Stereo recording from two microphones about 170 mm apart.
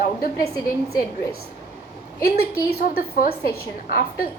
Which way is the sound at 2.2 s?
65° left (ahead or behind).